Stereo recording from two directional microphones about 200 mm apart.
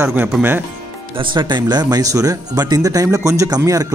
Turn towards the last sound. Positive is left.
turn(degrees=-15)  # may be behind; listen again after turning